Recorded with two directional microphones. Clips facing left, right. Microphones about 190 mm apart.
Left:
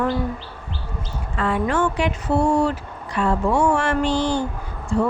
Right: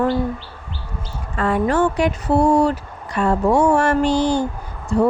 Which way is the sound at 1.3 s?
45° right (ahead or behind).